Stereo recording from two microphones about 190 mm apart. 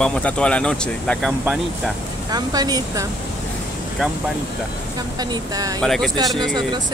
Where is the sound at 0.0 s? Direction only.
5° left (ahead or behind).